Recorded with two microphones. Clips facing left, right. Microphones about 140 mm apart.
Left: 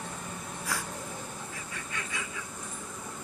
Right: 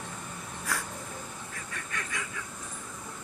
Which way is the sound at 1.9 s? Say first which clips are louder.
Right 1 dB; 25° left (ahead or behind).